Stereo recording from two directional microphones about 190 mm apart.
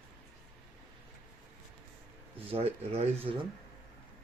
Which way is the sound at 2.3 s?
30° right (ahead or behind).